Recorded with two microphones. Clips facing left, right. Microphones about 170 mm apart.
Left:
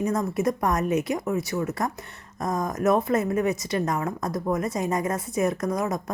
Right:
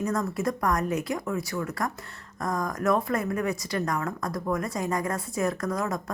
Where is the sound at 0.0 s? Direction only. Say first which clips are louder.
Left 3 dB; 20° left (ahead or behind).